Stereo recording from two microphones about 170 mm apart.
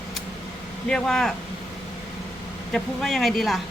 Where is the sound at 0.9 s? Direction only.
5° left (ahead or behind).